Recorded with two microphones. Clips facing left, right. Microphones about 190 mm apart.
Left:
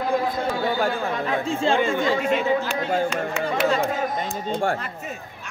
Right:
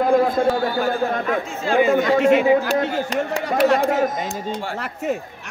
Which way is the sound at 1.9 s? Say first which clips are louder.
Right 6 dB; 65° right (ahead or behind).